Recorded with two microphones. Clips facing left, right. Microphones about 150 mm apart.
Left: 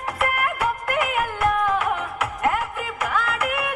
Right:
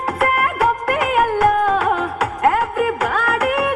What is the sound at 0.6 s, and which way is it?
Music of bollywood, 70° right (ahead or behind).